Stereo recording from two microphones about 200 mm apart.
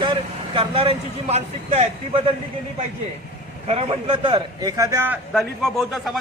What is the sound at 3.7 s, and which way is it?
Speech, 30° right (ahead or behind).